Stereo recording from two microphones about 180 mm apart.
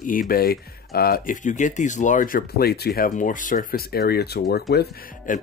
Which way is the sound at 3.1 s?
45° left (ahead or behind).